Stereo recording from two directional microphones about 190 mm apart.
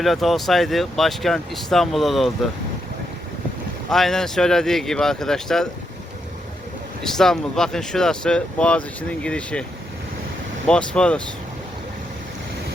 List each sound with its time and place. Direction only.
0.0 s speech: centre (ahead or behind)
3.8 s speech: centre (ahead or behind)
7.0 s speech: centre (ahead or behind)
10.7 s speech: 5° left (ahead or behind)